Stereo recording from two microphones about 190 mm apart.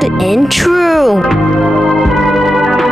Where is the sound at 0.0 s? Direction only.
Centre (ahead or behind).